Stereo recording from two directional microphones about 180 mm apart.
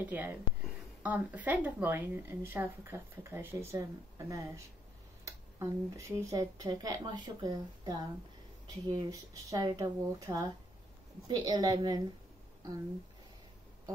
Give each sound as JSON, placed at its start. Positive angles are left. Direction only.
{"t": 0.0, "sound": "speech", "side_deg": -10}